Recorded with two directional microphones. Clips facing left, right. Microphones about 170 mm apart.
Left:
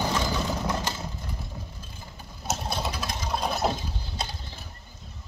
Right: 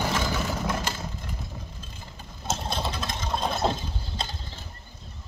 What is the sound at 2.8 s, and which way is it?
Sewing machine, 25° right (ahead or behind).